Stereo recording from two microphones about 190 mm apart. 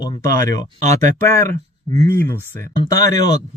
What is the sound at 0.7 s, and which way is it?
Speech, 40° right (ahead or behind).